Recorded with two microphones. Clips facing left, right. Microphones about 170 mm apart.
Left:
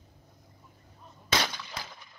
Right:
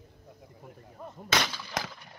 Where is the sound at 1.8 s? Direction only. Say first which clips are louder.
Right 11 dB; 90° right.